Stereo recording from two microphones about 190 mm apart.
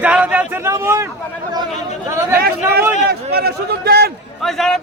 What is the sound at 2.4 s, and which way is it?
A man's voice, 55° right (ahead or behind).